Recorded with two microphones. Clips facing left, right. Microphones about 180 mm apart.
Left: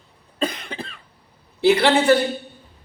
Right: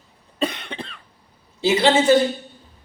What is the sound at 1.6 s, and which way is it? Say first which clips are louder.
Speech: left 1 dB; 60° left (ahead or behind).